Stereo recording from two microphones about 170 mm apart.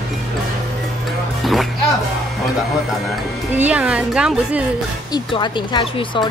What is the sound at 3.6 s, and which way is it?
A woman's voice, 5° right (ahead or behind).